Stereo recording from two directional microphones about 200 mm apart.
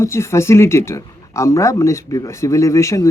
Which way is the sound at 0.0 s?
15° left (ahead or behind).